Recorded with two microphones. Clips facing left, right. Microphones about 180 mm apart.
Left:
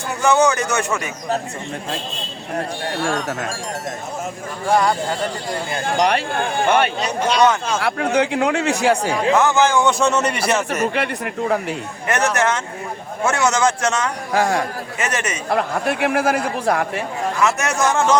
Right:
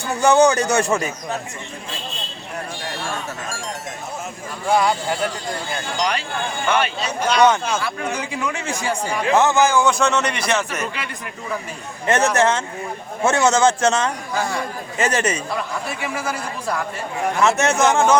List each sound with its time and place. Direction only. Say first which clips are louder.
0.2 s speech: right 2 dB; 35° right (ahead or behind)
4.7 s a man's voice: left 1 dB; 5° right (ahead or behind)
6.0 s speech: left 5 dB; 60° left (ahead or behind)
7.0 s speech: left 2 dB; 25° left (ahead or behind)
7.8 s speech: left 7 dB; 70° left (ahead or behind)
9.3 s a man's voice: right 1 dB; 25° right (ahead or behind)
9.6 s a man's voice: left 1 dB; 5° right (ahead or behind)
10.9 s speech: left 9 dB; 60° left (ahead or behind)
12.0 s a man's voice: right 2 dB; 25° right (ahead or behind)
14.3 s speech: left 8 dB; 70° left (ahead or behind)
14.9 s speech: right 5 dB; 30° right (ahead or behind)
15.4 s speech: left 6 dB; 55° left (ahead or behind)
17.4 s a man's voice: right 2 dB; 25° right (ahead or behind)